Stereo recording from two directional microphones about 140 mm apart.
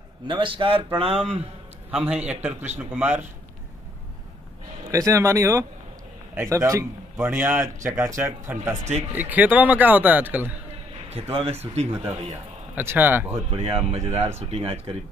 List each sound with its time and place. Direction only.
0.3 s a man's voice: 40° right (ahead or behind)
1.9 s a man's voice: 5° right (ahead or behind)
4.8 s a man's voice: 20° right (ahead or behind)
11.1 s speech: 45° right (ahead or behind)
12.7 s speech: 15° right (ahead or behind)
13.3 s speech: 45° right (ahead or behind)